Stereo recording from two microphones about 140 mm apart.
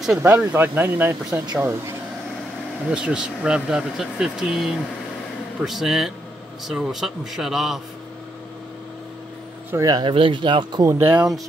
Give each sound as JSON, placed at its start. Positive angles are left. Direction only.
{"t": 0.2, "sound": "speech", "side_deg": -10}
{"t": 1.4, "sound": "speech", "side_deg": -25}
{"t": 2.9, "sound": "speech", "side_deg": -5}
{"t": 9.7, "sound": "speech", "side_deg": -25}
{"t": 11.0, "sound": "speech", "side_deg": -15}